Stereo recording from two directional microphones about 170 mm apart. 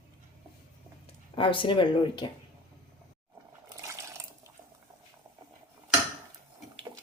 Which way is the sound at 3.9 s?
15° right (ahead or behind).